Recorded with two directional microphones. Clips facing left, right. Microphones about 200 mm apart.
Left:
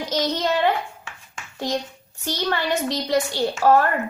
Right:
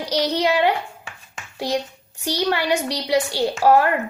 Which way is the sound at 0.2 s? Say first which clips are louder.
Right 3 dB; 10° right (ahead or behind).